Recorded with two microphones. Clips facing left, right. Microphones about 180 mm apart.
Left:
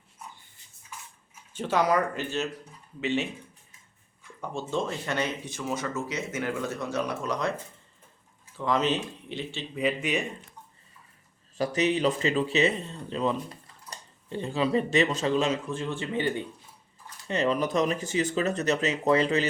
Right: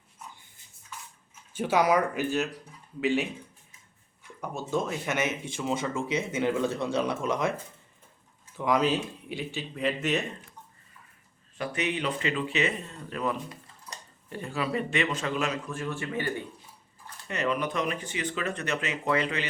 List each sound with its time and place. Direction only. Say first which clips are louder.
1.5 s speech: right 1 dB; 10° right (ahead or behind)
4.4 s speech: even; 5° right (ahead or behind)
5.0 s speech: even; 20° right (ahead or behind)
8.5 s speech: right 1 dB; 15° right (ahead or behind)
9.7 s speech: left 1 dB; 5° left (ahead or behind)
11.5 s speech: left 5 dB; 35° left (ahead or behind); by 16.4 s 20° left (ahead or behind)
17.2 s speech: left 3 dB; 30° left (ahead or behind)